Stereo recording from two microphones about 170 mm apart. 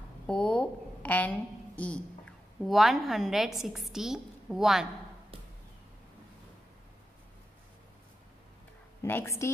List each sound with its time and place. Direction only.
0.3 s a woman's voice: 5° left (ahead or behind)
9.0 s speech: 15° left (ahead or behind)